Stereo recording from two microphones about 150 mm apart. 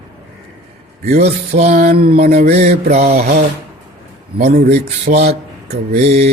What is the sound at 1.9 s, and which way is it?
Mantra, 90° right.